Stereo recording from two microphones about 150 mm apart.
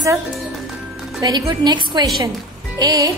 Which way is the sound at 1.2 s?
30° right (ahead or behind).